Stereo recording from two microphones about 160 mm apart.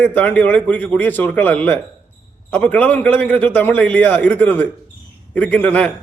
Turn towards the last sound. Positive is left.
turn(degrees=10)  # may be behind; listen again after turning